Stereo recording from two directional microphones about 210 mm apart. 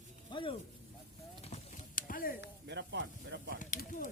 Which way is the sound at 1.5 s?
35° left (ahead or behind).